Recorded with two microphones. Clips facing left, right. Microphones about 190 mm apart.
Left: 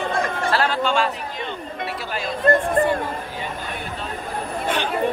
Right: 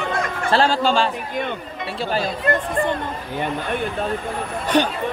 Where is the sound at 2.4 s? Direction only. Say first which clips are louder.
Left 7 dB; 45° left (ahead or behind).